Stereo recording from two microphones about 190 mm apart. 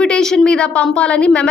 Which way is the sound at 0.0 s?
5° left (ahead or behind).